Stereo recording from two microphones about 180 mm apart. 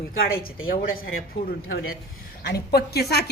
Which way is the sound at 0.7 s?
55° left (ahead or behind).